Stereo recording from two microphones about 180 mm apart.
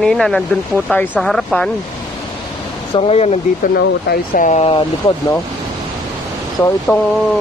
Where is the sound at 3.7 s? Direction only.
55° left (ahead or behind); by 4.8 s 35° left (ahead or behind).